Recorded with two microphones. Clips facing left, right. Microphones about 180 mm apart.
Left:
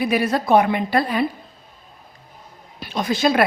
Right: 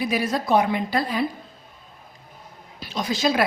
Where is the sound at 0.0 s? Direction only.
60° left (ahead or behind).